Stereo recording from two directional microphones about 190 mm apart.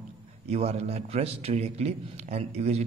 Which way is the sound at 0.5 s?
35° right (ahead or behind).